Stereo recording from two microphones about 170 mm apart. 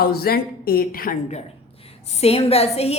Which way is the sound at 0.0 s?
65° left (ahead or behind).